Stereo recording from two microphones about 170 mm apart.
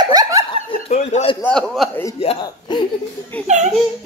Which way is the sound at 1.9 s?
15° left (ahead or behind).